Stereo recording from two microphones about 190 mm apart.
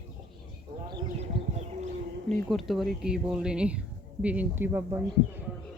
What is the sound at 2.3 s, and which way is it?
Speech, centre (ahead or behind).